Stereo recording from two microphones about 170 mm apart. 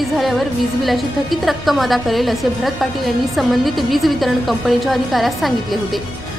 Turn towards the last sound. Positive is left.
turn(degrees=0)  # may be behind; listen again after turning